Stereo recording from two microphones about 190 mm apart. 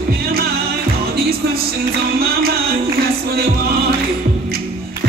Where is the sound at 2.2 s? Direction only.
55° right (ahead or behind).